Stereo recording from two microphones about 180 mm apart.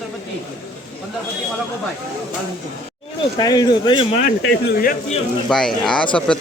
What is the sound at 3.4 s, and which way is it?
Speech, 20° left (ahead or behind).